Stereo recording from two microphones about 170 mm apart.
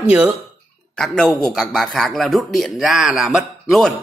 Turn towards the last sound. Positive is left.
turn(degrees=0)  # may be behind; listen again after turning